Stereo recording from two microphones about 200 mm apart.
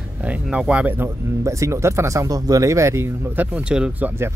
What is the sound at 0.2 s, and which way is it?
Speech, 5° right (ahead or behind).